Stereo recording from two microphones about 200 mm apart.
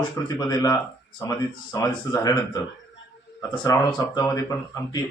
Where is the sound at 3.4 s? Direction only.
20° left (ahead or behind).